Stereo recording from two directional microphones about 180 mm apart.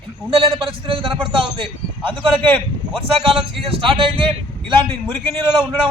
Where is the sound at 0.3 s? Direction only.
30° right (ahead or behind).